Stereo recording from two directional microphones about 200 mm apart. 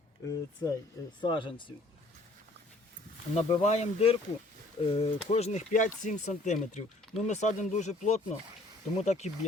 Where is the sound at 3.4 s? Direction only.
30° left (ahead or behind).